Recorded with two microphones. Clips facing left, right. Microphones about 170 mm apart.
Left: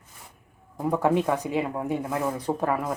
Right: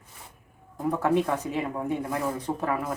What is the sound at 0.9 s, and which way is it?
Speech, 15° left (ahead or behind).